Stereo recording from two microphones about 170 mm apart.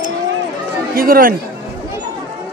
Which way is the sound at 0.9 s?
60° right (ahead or behind).